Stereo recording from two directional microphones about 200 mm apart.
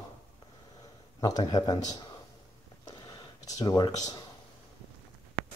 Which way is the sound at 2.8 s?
20° left (ahead or behind).